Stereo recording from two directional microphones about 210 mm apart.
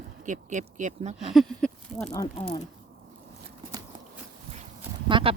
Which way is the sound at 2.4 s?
30° left (ahead or behind).